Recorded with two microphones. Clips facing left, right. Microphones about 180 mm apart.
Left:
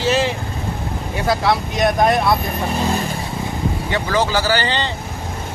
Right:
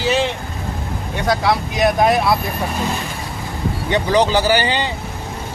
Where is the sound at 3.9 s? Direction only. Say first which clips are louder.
Right 4 dB; 20° right (ahead or behind).